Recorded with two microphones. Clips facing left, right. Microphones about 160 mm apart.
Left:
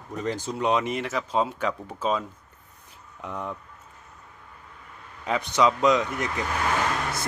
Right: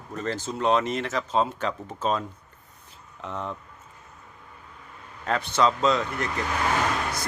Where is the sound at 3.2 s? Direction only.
10° left (ahead or behind).